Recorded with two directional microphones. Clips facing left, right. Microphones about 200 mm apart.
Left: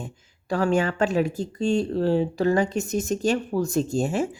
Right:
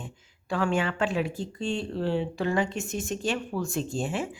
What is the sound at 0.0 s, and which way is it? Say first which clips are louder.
Speech: left 5 dB; 40° left (ahead or behind).